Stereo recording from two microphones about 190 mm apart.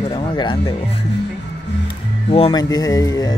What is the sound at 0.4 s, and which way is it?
Speech, 25° left (ahead or behind).